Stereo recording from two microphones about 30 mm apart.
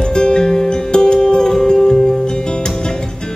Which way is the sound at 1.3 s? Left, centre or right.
Centre.